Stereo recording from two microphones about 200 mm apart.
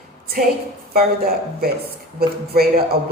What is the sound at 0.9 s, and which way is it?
A woman's voice, 50° right (ahead or behind).